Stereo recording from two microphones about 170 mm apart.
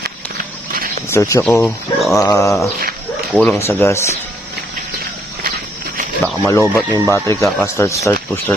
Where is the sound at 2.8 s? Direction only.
60° right (ahead or behind).